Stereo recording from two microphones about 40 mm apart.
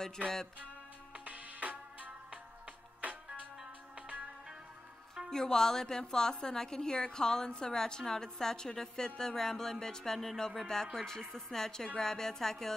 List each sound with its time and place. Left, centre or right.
1.2 s music: right
5.3 s a woman's voice: centre